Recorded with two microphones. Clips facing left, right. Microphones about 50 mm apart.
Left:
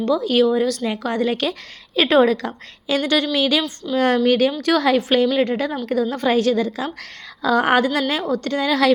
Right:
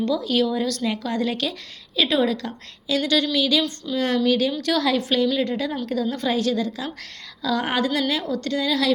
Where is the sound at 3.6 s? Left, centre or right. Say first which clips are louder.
Left 2 dB; left.